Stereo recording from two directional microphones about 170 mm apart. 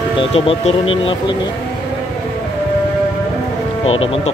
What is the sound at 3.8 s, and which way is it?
Speech, 35° left (ahead or behind).